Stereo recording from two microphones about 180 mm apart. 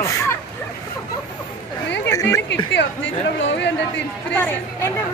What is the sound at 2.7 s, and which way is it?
Speech, 85° left.